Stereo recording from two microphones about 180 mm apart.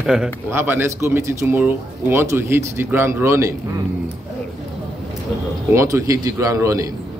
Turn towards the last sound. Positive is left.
turn(degrees=-15)  # may be behind; listen again after turning